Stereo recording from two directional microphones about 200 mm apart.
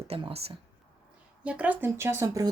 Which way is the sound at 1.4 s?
5° right (ahead or behind).